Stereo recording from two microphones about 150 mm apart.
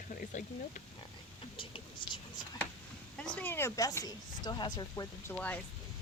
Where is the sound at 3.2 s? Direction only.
10° left (ahead or behind); by 5.0 s 30° left (ahead or behind).